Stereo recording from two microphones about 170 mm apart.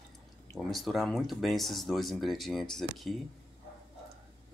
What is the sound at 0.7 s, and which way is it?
Speech, centre (ahead or behind).